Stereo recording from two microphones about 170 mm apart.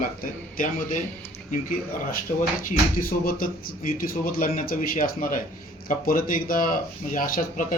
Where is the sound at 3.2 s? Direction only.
55° left (ahead or behind).